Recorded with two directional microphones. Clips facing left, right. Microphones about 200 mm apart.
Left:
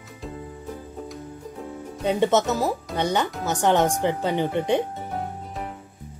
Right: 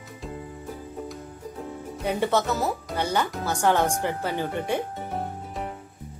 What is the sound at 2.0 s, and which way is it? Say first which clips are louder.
A woman's voice: left 4 dB; 20° left (ahead or behind).